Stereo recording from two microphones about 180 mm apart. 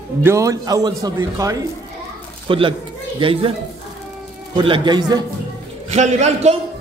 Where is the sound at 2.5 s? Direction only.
30° right (ahead or behind).